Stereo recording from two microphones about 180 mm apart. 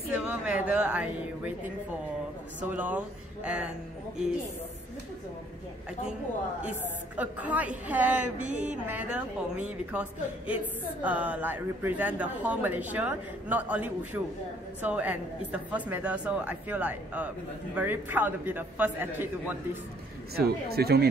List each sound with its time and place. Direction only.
0.1 s a woman's voice: 5° right (ahead or behind)
2.6 s speech: 10° right (ahead or behind)
7.2 s speech: 10° right (ahead or behind)
20.3 s speech: 60° right (ahead or behind)